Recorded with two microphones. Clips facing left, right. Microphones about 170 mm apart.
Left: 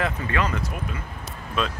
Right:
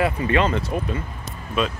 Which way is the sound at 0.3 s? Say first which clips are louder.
Right 5 dB; 25° right (ahead or behind).